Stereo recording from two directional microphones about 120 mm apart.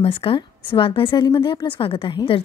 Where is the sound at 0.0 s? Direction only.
50° left (ahead or behind).